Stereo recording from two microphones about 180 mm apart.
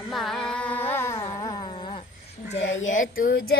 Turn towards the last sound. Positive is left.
turn(degrees=60)  # may be behind; listen again after turning